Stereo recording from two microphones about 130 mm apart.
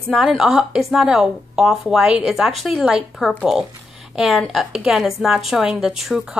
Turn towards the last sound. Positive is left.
turn(degrees=0)  # may be behind; listen again after turning